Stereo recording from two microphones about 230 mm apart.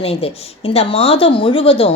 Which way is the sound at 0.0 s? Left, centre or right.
Left.